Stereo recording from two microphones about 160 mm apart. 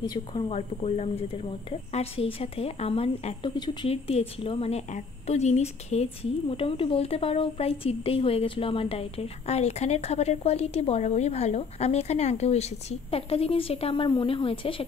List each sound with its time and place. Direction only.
0.1 s speech: 25° left (ahead or behind)
0.5 s a woman's voice: 40° left (ahead or behind)
3.5 s speech: 25° left (ahead or behind)
3.9 s a woman's voice: 40° left (ahead or behind)